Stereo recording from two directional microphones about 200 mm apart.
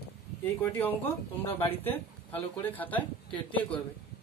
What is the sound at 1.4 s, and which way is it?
Speech, 30° left (ahead or behind).